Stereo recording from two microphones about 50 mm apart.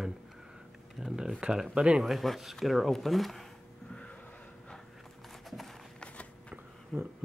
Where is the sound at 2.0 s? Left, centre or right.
Centre.